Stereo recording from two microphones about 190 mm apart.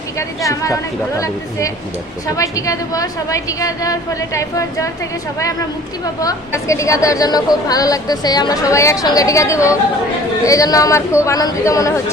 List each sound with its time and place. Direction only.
0.2 s a woman's voice: 15° left (ahead or behind)